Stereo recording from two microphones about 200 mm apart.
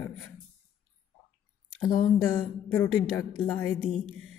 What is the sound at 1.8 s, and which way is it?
Speech, 15° left (ahead or behind).